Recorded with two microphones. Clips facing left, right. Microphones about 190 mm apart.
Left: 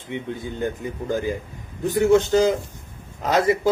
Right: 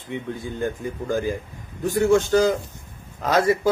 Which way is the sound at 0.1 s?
20° left (ahead or behind).